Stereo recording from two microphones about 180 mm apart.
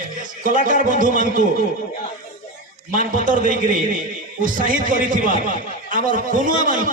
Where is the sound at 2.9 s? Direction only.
45° right (ahead or behind).